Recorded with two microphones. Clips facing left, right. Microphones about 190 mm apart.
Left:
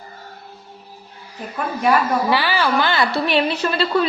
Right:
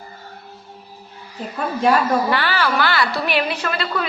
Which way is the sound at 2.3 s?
15° left (ahead or behind).